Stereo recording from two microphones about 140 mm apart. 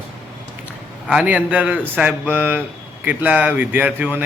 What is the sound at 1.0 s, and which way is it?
Speech, 10° right (ahead or behind).